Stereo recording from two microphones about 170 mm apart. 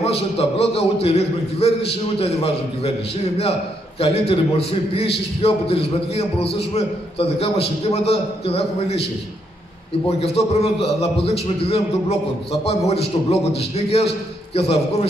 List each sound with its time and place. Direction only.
0.0 s a man's voice: 35° left (ahead or behind)
4.0 s a man's voice: 35° left (ahead or behind)
10.0 s a man's voice: 35° left (ahead or behind)
12.6 s a man's voice: 35° left (ahead or behind)